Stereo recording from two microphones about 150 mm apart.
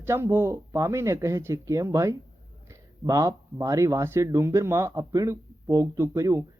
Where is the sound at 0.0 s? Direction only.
15° right (ahead or behind).